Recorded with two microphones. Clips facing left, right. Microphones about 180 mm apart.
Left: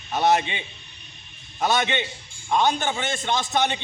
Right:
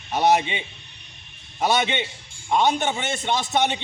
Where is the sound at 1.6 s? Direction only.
15° right (ahead or behind).